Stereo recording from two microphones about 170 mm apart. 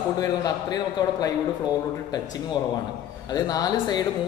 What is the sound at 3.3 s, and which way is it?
Speech, 20° left (ahead or behind).